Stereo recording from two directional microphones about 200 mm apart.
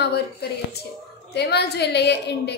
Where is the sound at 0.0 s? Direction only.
55° left (ahead or behind).